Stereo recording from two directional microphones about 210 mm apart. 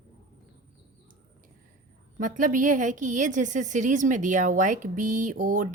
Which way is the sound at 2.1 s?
40° right (ahead or behind).